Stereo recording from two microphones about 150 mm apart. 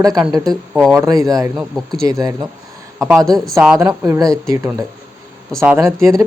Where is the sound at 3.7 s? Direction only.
20° right (ahead or behind).